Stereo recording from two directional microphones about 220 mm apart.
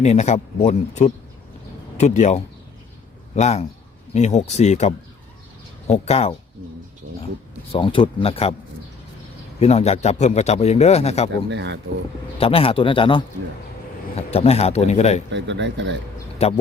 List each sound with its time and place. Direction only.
0.0 s a man's voice: 30° left (ahead or behind)
7.0 s speech: 35° right (ahead or behind)
7.7 s a man's voice: 25° left (ahead or behind)
9.6 s a man's voice: 30° left (ahead or behind)
11.4 s speech: 55° right (ahead or behind)
12.4 s a man's voice: 25° left (ahead or behind)
15.3 s speech: 55° right (ahead or behind)
16.4 s a man's voice: 30° left (ahead or behind)